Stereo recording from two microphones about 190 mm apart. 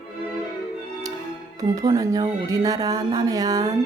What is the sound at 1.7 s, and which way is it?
Speech, 15° right (ahead or behind).